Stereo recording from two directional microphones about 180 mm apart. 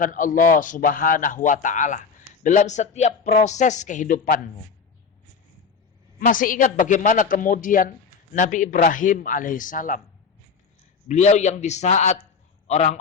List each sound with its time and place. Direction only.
0.0 s a man's voice: 45° left (ahead or behind)
6.1 s a man's voice: 50° left (ahead or behind)
11.1 s a man's voice: 40° left (ahead or behind)